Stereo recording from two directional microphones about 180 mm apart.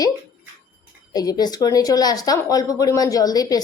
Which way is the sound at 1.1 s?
20° left (ahead or behind).